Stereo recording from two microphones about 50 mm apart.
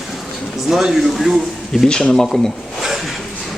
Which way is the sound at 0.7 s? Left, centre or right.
Centre.